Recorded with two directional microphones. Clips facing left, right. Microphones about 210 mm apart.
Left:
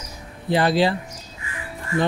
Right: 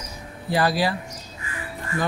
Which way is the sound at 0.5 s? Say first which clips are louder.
Left 3 dB; 25° left (ahead or behind).